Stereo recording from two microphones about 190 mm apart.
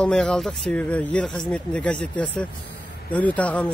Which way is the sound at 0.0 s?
5° left (ahead or behind).